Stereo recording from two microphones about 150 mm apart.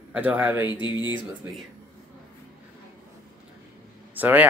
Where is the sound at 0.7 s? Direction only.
30° left (ahead or behind).